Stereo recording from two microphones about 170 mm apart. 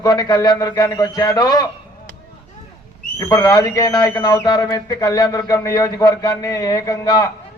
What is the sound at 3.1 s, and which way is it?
A man's voice, 20° left (ahead or behind).